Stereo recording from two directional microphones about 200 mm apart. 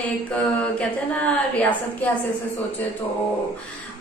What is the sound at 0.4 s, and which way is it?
A woman's voice, 5° left (ahead or behind).